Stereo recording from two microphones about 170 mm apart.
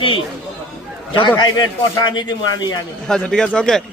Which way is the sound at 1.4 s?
25° left (ahead or behind).